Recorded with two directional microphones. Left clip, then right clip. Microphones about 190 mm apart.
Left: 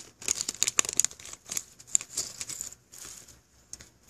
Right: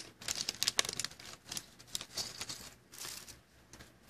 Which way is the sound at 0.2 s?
20° left (ahead or behind).